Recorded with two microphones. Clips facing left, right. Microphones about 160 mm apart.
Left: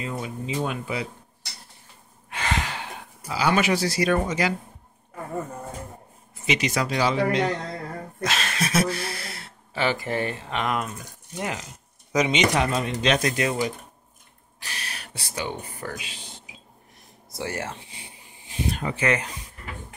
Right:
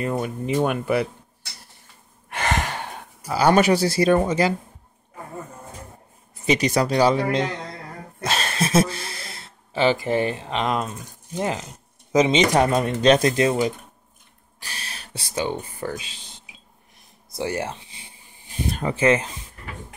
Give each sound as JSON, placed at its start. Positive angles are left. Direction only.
{"t": 0.0, "sound": "speech", "side_deg": -55}
{"t": 2.2, "sound": "a sound", "side_deg": -55}
{"t": 6.4, "sound": "speech", "side_deg": -35}
{"t": 8.2, "sound": "speech", "side_deg": -30}
{"t": 13.0, "sound": "speech", "side_deg": -35}
{"t": 17.4, "sound": "speech", "side_deg": -20}